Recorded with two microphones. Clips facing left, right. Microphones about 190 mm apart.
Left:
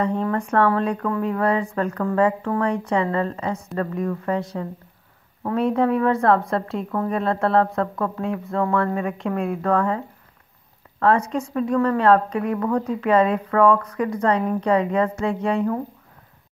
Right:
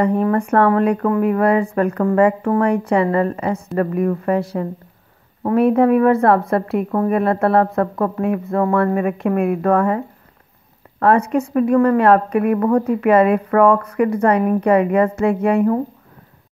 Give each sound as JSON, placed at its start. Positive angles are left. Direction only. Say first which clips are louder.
{"t": 0.2, "sound": "a woman's voice", "louder": "right 5 dB", "side_deg": -60}